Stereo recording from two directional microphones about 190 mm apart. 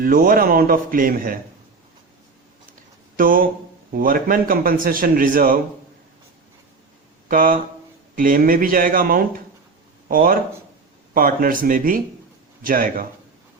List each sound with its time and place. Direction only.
0.0 s a man's voice: 50° right (ahead or behind)
3.2 s a man's voice: 50° right (ahead or behind)
7.3 s a man's voice: 45° right (ahead or behind)